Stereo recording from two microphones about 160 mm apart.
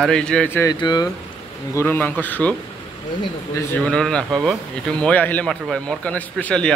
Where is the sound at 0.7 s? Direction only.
25° left (ahead or behind).